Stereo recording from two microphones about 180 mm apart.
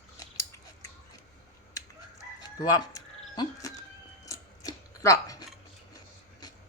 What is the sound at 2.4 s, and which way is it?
Music, 20° left (ahead or behind).